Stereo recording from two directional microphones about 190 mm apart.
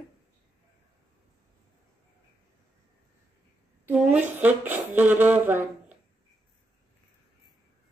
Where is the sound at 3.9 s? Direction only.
10° right (ahead or behind).